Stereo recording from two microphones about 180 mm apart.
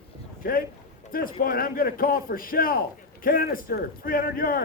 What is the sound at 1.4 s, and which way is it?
A man's voice, 55° left (ahead or behind).